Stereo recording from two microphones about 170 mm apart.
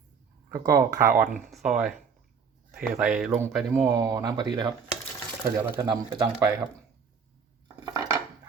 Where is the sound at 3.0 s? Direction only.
5° right (ahead or behind); by 4.4 s 20° right (ahead or behind).